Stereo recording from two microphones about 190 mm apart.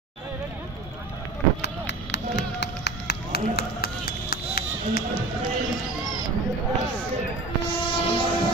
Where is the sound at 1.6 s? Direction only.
65° left (ahead or behind).